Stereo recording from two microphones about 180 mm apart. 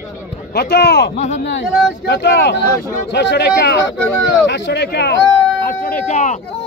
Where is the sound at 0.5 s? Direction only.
65° left (ahead or behind).